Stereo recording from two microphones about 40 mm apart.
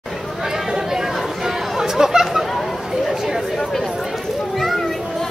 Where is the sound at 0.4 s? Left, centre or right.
Centre.